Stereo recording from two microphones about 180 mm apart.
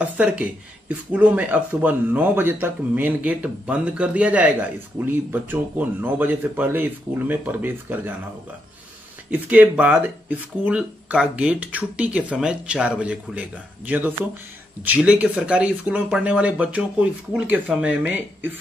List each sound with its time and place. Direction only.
0.0 s speech: 10° right (ahead or behind)
9.3 s speech: 10° right (ahead or behind)